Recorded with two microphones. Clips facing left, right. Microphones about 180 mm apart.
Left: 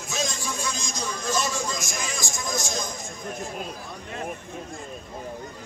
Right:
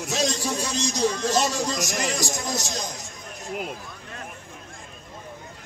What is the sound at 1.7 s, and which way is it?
Speech, 70° right (ahead or behind).